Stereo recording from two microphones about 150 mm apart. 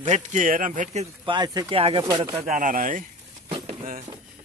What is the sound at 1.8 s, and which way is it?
Speech, 40° right (ahead or behind).